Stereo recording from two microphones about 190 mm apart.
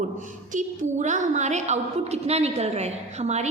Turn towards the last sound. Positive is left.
turn(degrees=-35)  # may be behind; listen again after turning